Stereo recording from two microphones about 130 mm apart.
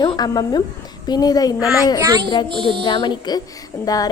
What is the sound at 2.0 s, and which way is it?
Speech, 30° right (ahead or behind).